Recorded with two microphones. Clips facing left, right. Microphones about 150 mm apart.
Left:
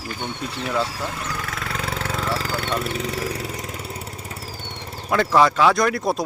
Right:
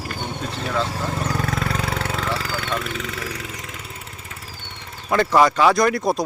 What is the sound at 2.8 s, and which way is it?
Vehicle, 35° left (ahead or behind).